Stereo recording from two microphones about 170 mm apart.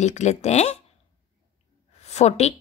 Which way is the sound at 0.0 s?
45° left (ahead or behind).